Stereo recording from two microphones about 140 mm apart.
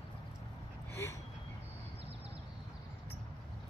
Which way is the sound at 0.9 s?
20° left (ahead or behind).